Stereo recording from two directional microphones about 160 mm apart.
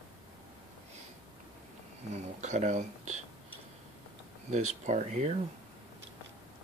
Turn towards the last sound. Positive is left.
turn(degrees=-45)  # may be behind; listen again after turning